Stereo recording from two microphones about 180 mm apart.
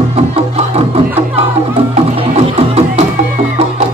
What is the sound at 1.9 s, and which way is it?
Music, 35° right (ahead or behind).